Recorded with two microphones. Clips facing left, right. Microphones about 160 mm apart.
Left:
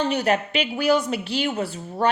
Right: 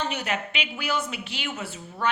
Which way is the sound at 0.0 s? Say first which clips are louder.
Left 8 dB; 35° left (ahead or behind).